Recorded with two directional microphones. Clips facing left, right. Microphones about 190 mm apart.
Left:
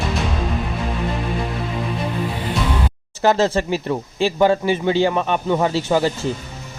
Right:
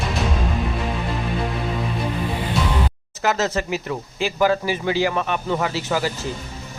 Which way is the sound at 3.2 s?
30° left (ahead or behind).